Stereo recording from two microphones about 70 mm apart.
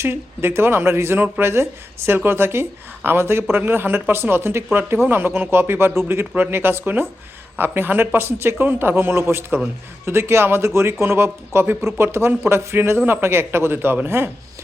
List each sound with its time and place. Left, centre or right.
0.0 s speech: right